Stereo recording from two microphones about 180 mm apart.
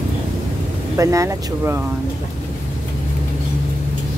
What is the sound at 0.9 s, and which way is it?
Speech, 20° right (ahead or behind).